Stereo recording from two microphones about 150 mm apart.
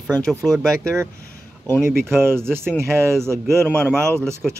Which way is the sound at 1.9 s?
15° right (ahead or behind).